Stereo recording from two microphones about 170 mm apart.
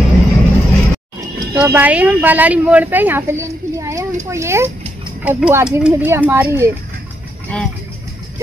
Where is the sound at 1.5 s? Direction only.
10° right (ahead or behind).